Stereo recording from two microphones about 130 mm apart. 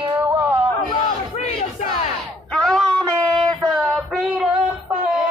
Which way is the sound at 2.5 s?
5° left (ahead or behind).